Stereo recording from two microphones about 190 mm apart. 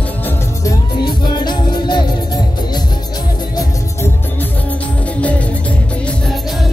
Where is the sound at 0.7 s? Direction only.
25° left (ahead or behind).